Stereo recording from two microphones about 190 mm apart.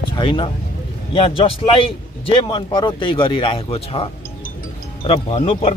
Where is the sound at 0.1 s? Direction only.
25° left (ahead or behind).